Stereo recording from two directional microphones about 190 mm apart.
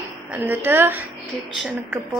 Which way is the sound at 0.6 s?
10° right (ahead or behind).